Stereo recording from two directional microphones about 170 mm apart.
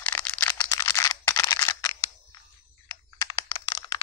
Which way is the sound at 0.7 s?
15° left (ahead or behind).